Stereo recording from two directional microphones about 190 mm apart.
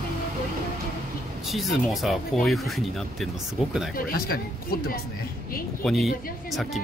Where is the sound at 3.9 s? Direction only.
50° left (ahead or behind).